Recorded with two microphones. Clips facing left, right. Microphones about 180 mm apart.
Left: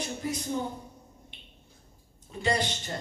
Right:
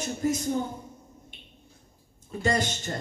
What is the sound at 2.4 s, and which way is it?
Speech, 45° right (ahead or behind).